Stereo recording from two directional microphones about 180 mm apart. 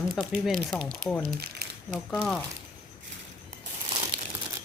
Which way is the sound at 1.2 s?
60° right (ahead or behind).